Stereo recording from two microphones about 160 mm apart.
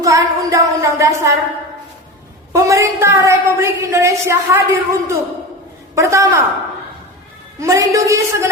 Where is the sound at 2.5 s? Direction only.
20° right (ahead or behind).